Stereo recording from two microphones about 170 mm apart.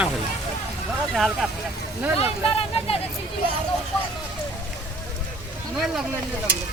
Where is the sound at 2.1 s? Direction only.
35° left (ahead or behind).